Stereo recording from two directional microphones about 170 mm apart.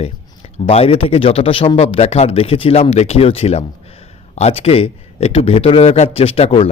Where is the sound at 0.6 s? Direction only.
35° left (ahead or behind).